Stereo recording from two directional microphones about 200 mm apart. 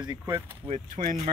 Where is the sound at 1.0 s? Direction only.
40° right (ahead or behind).